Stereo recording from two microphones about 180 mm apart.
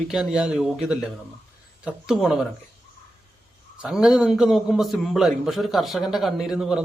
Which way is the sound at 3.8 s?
Centre (ahead or behind).